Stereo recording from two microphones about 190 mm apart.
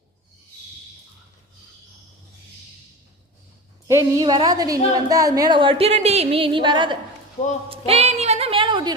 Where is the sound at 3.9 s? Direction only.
15° right (ahead or behind).